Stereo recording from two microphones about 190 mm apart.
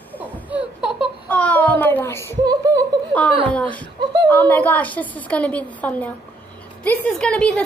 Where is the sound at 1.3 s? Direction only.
10° left (ahead or behind).